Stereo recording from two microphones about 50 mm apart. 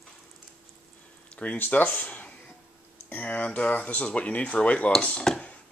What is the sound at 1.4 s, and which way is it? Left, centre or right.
Speech, left.